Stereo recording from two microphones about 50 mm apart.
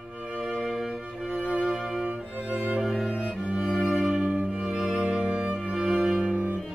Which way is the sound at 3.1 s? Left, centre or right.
Centre.